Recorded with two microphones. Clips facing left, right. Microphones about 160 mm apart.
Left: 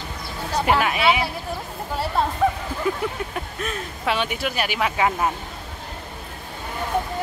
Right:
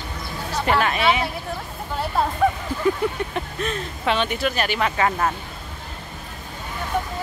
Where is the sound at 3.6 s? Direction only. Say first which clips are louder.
Right 1 dB; 5° left (ahead or behind).